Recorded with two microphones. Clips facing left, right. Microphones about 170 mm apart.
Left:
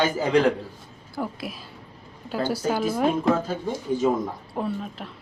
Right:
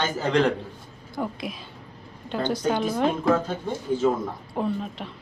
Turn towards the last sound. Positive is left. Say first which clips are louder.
# right 2 dB
turn(degrees=0)  # may be behind; listen again after turning